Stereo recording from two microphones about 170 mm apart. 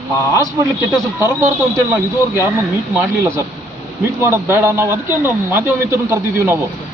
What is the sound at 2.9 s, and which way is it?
A man's voice, 15° right (ahead or behind).